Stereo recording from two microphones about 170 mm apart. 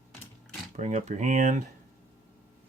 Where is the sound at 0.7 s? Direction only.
45° right (ahead or behind).